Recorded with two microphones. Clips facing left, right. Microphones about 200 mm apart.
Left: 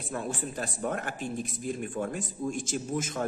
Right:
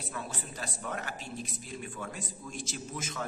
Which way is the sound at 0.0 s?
50° left (ahead or behind).